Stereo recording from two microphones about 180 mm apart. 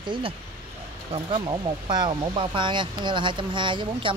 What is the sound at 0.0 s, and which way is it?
Speech, 25° right (ahead or behind).